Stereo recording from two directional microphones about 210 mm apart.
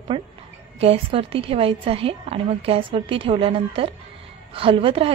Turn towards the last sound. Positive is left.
turn(degrees=-25)  # may be behind; listen again after turning